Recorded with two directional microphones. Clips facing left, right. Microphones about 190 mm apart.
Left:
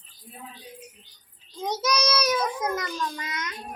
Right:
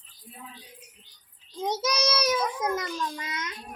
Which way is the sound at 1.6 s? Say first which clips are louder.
Left 1 dB; 25° right (ahead or behind).